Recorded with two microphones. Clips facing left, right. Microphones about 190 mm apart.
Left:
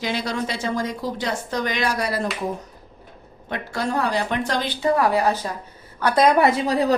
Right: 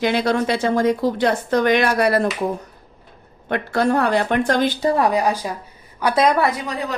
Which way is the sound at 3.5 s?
60° right (ahead or behind).